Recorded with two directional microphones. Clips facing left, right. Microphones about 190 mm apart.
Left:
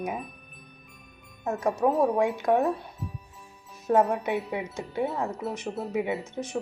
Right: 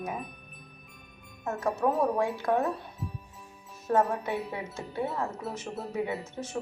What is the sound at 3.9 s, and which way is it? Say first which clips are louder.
Speech: left 3 dB; 10° left (ahead or behind).